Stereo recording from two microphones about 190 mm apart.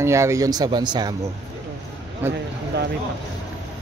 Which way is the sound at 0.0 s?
15° right (ahead or behind).